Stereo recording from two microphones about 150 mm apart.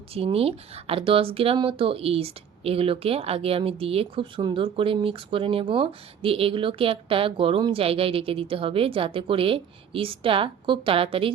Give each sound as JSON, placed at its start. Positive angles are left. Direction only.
{"t": 0.1, "sound": "speech", "side_deg": -40}